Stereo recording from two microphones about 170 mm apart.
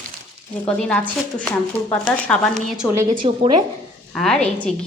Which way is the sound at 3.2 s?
25° right (ahead or behind).